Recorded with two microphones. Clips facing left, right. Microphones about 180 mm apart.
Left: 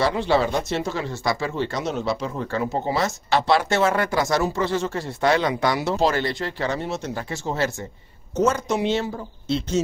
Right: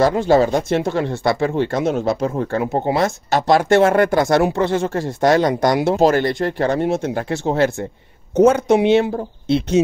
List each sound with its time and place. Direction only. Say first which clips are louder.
0.0 s speech: right 6 dB; 45° right (ahead or behind); by 9.8 s 60° right (ahead or behind)